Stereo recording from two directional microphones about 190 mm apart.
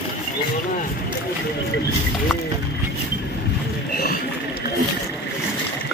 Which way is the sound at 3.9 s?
55° left (ahead or behind).